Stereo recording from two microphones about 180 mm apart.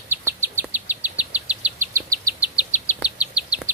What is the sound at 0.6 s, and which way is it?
Insect, 10° right (ahead or behind).